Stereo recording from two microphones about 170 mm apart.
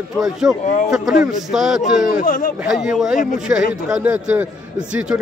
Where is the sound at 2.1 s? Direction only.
55° left (ahead or behind).